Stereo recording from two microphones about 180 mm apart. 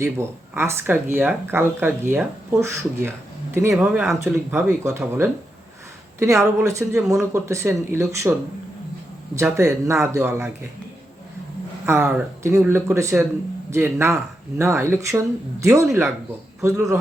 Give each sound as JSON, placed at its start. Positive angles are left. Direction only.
{"t": 0.0, "sound": "speech", "side_deg": -15}
{"t": 9.4, "sound": "speech", "side_deg": -15}
{"t": 11.9, "sound": "speech", "side_deg": -10}